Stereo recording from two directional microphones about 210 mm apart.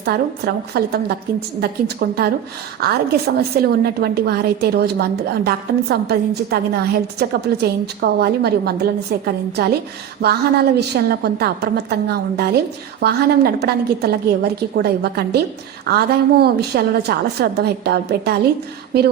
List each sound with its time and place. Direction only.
0.0 s a woman's voice: 50° right (ahead or behind)